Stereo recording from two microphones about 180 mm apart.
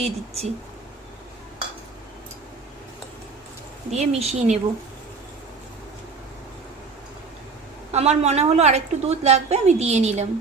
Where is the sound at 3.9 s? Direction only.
35° right (ahead or behind).